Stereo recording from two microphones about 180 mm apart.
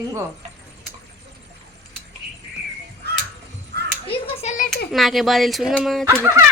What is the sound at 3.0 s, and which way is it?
Crow, 65° right (ahead or behind).